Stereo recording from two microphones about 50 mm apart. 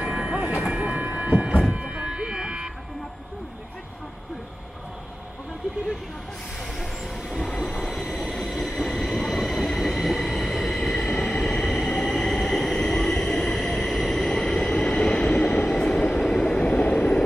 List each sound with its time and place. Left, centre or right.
0.0 s train: centre
1.6 s a sound: right
6.6 s train: centre
7.3 s train: centre; by 16.2 s left
16.3 s vehicle: centre